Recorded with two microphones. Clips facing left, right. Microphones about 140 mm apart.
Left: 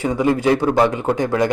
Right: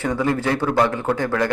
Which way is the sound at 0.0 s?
15° left (ahead or behind).